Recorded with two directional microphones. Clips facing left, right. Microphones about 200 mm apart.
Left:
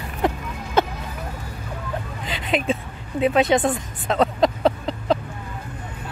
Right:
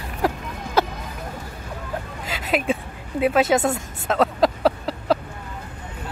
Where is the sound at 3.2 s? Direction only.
5° right (ahead or behind).